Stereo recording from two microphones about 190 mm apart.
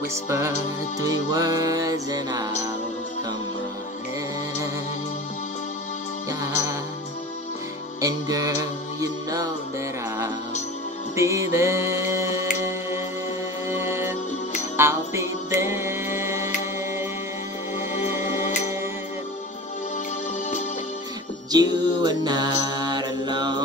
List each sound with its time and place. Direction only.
1.3 s music: 15° right (ahead or behind)
6.4 s music: 15° right (ahead or behind)
8.0 s music: 20° right (ahead or behind)
11.1 s music: 15° right (ahead or behind)
13.7 s music: 15° right (ahead or behind)
17.9 s music: 40° left (ahead or behind)
21.5 s mantra: 20° right (ahead or behind)